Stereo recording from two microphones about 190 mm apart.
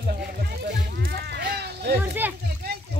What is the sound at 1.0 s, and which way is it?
Speech, 55° right (ahead or behind).